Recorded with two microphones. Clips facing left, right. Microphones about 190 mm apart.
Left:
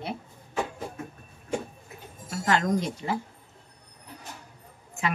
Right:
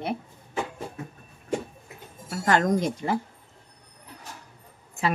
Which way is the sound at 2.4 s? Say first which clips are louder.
Right 3 dB; 45° right (ahead or behind).